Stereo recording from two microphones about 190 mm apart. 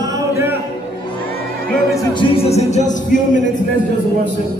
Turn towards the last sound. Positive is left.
turn(degrees=40)  # may be behind; listen again after turning